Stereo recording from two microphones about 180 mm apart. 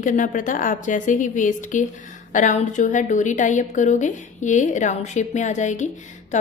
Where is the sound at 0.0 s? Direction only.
45° left (ahead or behind).